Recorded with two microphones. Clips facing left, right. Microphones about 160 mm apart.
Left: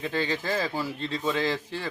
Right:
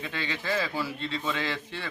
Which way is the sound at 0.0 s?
40° left (ahead or behind).